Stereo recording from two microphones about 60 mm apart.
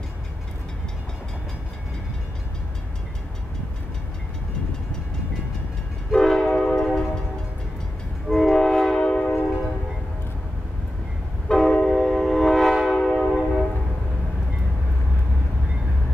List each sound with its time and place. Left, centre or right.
6.1 s train: centre
8.3 s train: centre
9.0 s train horn: centre
11.4 s train: centre
12.8 s train horn: centre